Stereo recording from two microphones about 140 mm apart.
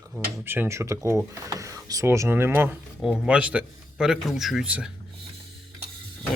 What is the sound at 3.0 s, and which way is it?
Speech, 5° right (ahead or behind).